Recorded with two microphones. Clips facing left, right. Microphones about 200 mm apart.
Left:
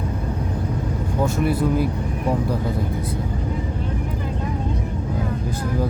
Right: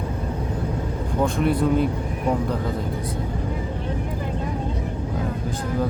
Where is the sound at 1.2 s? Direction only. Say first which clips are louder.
Even; 5° left (ahead or behind).